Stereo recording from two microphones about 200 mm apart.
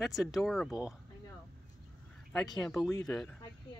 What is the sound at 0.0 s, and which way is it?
Speech, centre (ahead or behind).